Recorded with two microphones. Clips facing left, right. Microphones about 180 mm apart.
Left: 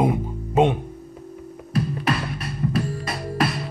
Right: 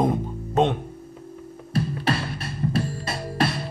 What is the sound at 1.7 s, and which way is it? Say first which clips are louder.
Music: left 1 dB; 30° right (ahead or behind).